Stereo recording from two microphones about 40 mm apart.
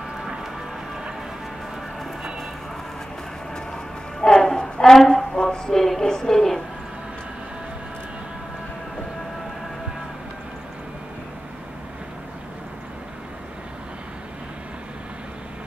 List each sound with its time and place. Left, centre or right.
3.7 s music: centre
4.7 s a woman's voice: centre